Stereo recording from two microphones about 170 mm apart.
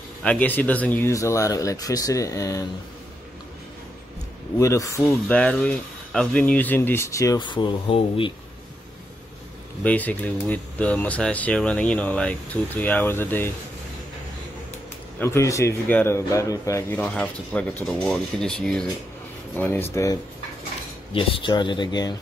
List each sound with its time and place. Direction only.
0.2 s speech: 10° left (ahead or behind)
4.6 s a man's voice: 20° left (ahead or behind)
9.8 s a man's voice: 10° left (ahead or behind)
15.1 s a man's voice: 15° left (ahead or behind)
21.1 s speech: 30° left (ahead or behind)